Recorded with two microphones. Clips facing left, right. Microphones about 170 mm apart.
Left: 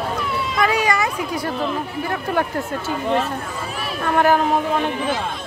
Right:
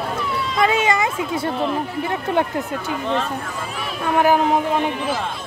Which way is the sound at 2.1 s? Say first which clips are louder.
Right 1 dB; 20° right (ahead or behind).